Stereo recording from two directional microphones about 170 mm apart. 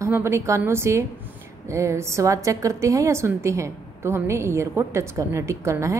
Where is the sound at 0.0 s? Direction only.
15° right (ahead or behind).